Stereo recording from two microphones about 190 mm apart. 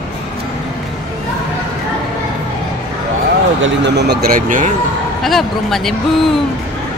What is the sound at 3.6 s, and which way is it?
Speech, 65° right (ahead or behind).